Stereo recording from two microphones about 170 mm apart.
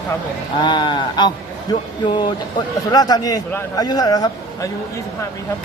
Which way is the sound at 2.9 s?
20° left (ahead or behind).